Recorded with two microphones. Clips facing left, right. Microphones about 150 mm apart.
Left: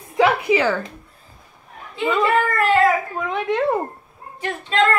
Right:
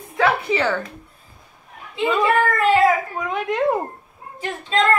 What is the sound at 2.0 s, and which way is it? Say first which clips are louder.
A woman's voice: even; centre (ahead or behind).